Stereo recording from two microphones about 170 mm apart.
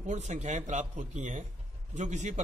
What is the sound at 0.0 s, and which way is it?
Speech, 45° right (ahead or behind).